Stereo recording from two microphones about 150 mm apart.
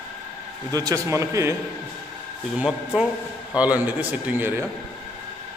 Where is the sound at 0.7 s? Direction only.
25° right (ahead or behind).